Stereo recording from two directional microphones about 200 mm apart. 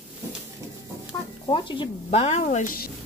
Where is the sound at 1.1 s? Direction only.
20° left (ahead or behind); by 2.9 s 45° left (ahead or behind).